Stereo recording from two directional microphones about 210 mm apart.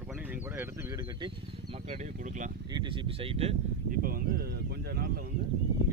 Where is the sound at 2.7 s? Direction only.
20° right (ahead or behind).